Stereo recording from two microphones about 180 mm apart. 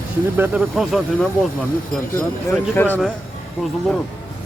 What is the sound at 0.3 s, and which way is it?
Speech, 10° right (ahead or behind).